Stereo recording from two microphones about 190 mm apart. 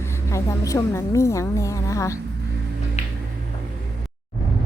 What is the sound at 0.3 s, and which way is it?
A woman's voice, 15° left (ahead or behind).